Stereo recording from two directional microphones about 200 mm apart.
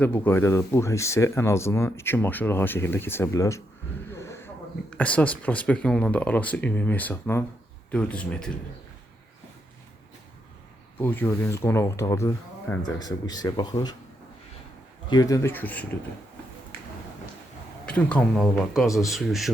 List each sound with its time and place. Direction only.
0.0 s speech: 10° left (ahead or behind)
11.0 s speech: 10° left (ahead or behind)
15.1 s speech: 20° left (ahead or behind)
17.8 s speech: 5° left (ahead or behind)